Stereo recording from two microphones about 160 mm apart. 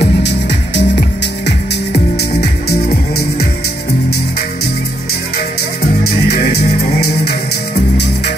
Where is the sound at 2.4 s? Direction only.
85° left.